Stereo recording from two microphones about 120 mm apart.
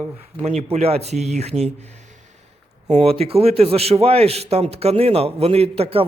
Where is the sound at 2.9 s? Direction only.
55° right (ahead or behind).